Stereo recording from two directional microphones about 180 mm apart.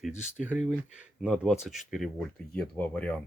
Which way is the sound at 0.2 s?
5° right (ahead or behind).